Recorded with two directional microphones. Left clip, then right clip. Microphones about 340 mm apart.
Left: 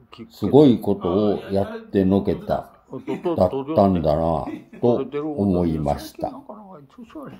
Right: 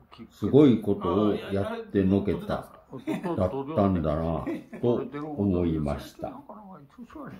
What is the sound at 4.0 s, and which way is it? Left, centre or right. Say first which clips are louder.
Speech: left 9 dB; centre.